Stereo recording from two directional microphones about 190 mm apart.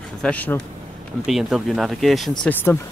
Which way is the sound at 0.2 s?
10° left (ahead or behind).